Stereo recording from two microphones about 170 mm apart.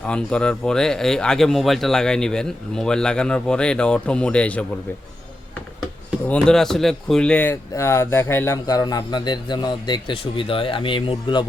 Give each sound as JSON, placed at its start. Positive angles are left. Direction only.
{"t": 0.0, "sound": "speech", "side_deg": 5}
{"t": 6.2, "sound": "speech", "side_deg": 5}